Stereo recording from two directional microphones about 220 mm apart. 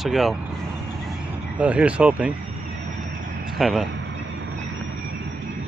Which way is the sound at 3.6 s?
Centre (ahead or behind).